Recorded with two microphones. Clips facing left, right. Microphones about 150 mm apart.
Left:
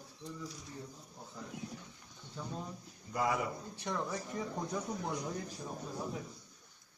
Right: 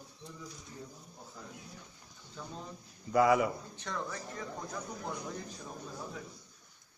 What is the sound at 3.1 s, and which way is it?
Speech, 90° right.